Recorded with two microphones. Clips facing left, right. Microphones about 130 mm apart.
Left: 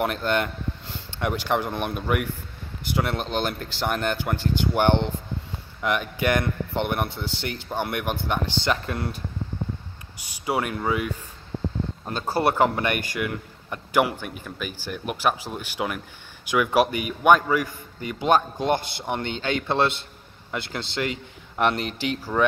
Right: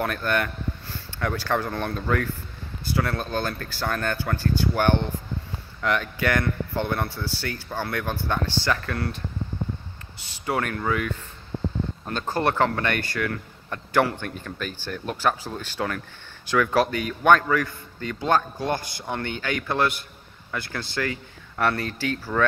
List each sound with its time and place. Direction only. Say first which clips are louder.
0.0 s a man's voice: left 1 dB; 20° left (ahead or behind)
10.1 s a man's voice: left 1 dB; 10° left (ahead or behind)